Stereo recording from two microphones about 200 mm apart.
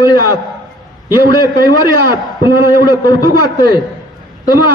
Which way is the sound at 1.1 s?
50° right (ahead or behind).